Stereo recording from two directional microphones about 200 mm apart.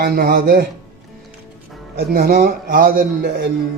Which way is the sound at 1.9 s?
50° right (ahead or behind).